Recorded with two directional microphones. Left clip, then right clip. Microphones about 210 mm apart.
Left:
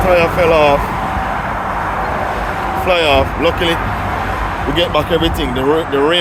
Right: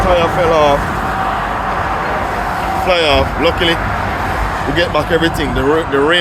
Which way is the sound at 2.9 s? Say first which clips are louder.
Left 1 dB; 10° left (ahead or behind).